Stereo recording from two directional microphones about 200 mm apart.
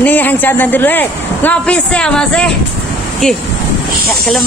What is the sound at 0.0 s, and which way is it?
A man's voice, 10° left (ahead or behind).